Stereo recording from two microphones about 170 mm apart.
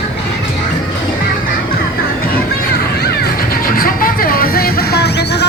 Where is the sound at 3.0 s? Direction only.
70° left (ahead or behind).